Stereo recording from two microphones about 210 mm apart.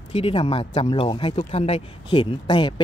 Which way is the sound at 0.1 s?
25° left (ahead or behind).